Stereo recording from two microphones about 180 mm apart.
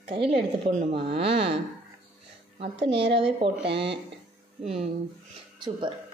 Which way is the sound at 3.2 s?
30° right (ahead or behind).